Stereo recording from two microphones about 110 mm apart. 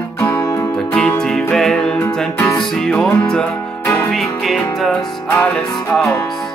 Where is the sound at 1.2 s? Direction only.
5° left (ahead or behind).